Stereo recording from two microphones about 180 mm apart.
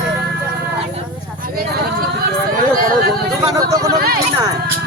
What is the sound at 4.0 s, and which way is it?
Speech, 55° right (ahead or behind).